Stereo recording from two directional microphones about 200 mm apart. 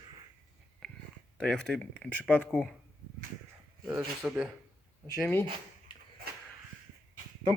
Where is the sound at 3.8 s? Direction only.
5° right (ahead or behind).